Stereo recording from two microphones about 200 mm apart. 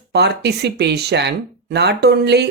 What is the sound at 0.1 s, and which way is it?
Speech, 55° right (ahead or behind).